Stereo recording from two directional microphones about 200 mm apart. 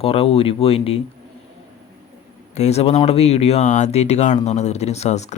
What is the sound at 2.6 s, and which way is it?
Speech, 30° left (ahead or behind).